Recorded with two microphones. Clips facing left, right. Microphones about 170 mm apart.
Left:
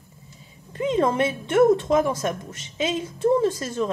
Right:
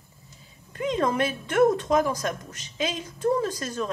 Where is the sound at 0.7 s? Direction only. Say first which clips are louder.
Left 3 dB; 25° left (ahead or behind).